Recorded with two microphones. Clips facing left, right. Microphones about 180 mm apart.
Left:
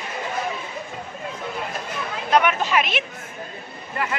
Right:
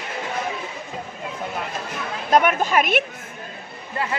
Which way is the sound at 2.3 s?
45° right (ahead or behind).